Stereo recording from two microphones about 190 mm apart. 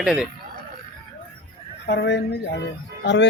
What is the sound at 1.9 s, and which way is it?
Speech, 65° left (ahead or behind).